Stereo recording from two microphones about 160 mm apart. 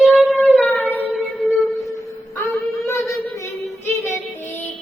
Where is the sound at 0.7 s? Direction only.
10° left (ahead or behind).